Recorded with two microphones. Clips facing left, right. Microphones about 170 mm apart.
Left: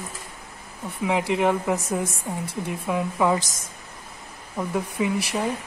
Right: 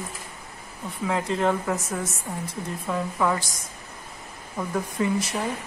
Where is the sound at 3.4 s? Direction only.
45° left (ahead or behind).